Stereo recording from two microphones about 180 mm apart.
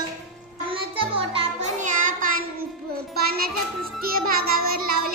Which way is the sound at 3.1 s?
55° right (ahead or behind).